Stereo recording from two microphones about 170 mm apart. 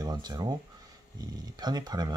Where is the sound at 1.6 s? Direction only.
25° right (ahead or behind).